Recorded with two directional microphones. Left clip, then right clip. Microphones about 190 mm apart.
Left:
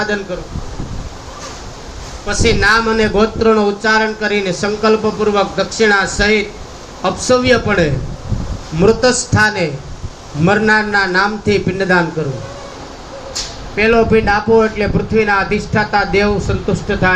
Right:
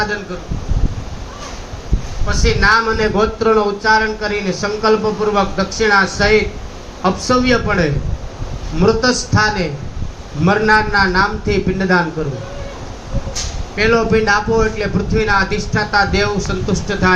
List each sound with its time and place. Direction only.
2.2 s a man's voice: 50° left (ahead or behind)
13.7 s a man's voice: 55° left (ahead or behind)